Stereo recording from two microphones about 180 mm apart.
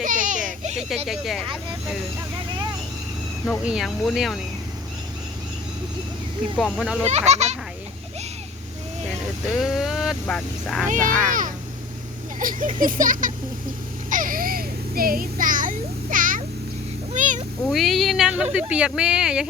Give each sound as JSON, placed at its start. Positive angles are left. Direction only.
{"t": 0.0, "sound": "a sound", "side_deg": -45}
{"t": 1.0, "sound": "speech", "side_deg": 0}
{"t": 3.4, "sound": "speech", "side_deg": 0}
{"t": 6.6, "sound": "speech", "side_deg": 0}
{"t": 7.0, "sound": "a child's voice", "side_deg": -40}
{"t": 9.5, "sound": "speech", "side_deg": 0}
{"t": 10.8, "sound": "speech", "side_deg": -45}
{"t": 14.1, "sound": "a sound", "side_deg": -50}
{"t": 17.7, "sound": "speech", "side_deg": 0}